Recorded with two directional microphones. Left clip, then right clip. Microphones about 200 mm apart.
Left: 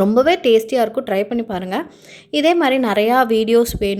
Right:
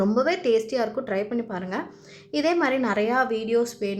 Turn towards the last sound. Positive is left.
turn(degrees=40)  # may be behind; listen again after turning